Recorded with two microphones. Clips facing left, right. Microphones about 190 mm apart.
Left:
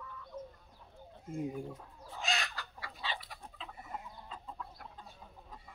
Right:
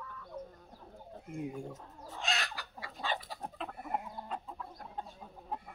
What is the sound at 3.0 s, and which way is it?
Chicken, 45° right (ahead or behind).